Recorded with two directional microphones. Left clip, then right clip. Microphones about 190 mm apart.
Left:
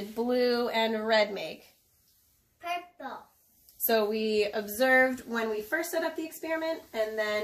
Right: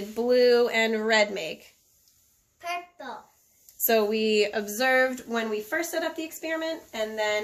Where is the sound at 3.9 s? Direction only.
50° right (ahead or behind).